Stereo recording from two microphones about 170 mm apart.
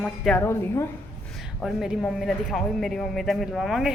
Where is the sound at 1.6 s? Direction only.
Centre (ahead or behind).